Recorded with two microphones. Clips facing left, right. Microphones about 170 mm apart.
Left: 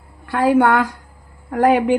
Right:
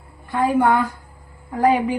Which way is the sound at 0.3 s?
90° left.